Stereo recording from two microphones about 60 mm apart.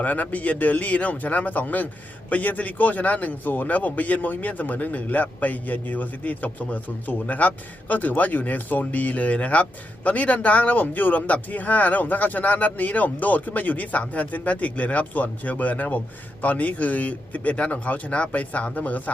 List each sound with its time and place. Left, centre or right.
0.0 s a man's voice: left